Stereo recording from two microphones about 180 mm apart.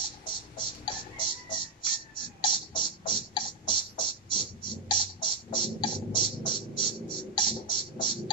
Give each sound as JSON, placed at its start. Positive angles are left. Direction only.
{"t": 0.0, "sound": "music", "side_deg": 25}